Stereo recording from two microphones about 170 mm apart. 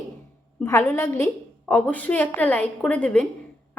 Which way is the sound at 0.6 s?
15° left (ahead or behind).